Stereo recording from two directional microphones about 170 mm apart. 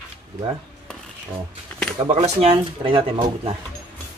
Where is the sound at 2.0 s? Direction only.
40° right (ahead or behind).